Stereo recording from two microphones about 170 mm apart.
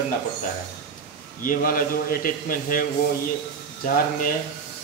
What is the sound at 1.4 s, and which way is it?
A man's voice, 55° left (ahead or behind).